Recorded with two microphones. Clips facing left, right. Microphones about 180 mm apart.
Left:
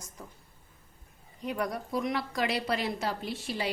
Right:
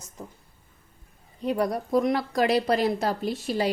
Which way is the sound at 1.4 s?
35° right (ahead or behind).